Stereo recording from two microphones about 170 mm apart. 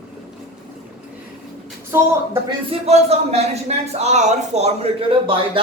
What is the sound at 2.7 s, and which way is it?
Speech, 40° right (ahead or behind).